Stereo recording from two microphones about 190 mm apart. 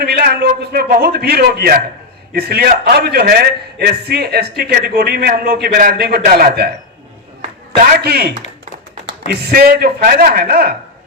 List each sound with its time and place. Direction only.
0.0 s a man's voice: 55° right (ahead or behind)